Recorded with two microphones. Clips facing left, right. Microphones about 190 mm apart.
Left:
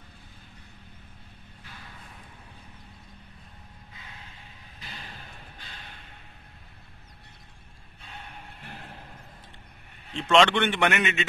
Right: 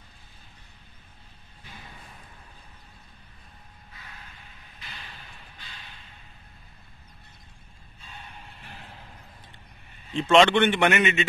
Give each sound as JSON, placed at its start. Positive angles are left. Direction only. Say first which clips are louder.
{"t": 3.9, "sound": "music", "louder": "right 1 dB", "side_deg": 20}
{"t": 4.7, "sound": "a sound", "louder": "left 2 dB", "side_deg": 40}
{"t": 8.0, "sound": "music", "louder": "left 1 dB", "side_deg": 60}
{"t": 10.2, "sound": "a man's voice", "louder": "right 3 dB", "side_deg": 0}